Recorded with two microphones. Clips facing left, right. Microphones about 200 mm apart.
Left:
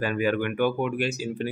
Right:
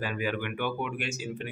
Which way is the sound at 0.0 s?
50° left (ahead or behind).